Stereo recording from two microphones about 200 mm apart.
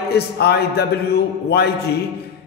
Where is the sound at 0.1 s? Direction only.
55° left (ahead or behind).